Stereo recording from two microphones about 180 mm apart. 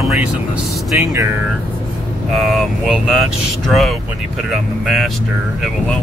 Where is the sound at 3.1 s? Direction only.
Centre (ahead or behind).